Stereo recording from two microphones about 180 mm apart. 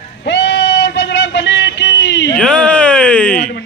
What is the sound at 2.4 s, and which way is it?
Speech, 5° left (ahead or behind).